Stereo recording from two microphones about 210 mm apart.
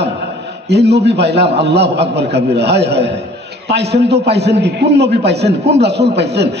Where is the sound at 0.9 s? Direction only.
50° right (ahead or behind).